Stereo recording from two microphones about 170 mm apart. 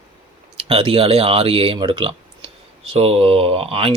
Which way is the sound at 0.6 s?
35° right (ahead or behind).